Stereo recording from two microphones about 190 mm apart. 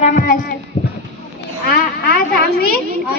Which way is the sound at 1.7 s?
55° left (ahead or behind).